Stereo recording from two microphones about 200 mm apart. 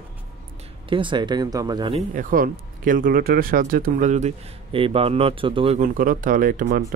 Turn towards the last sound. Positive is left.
turn(degrees=-40)  # may be behind; listen again after turning